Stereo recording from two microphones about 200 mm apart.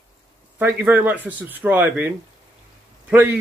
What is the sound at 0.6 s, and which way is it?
Speech, 10° right (ahead or behind).